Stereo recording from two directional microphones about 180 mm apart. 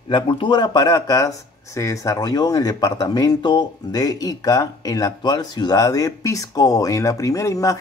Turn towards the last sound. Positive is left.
turn(degrees=20)  # may be behind; listen again after turning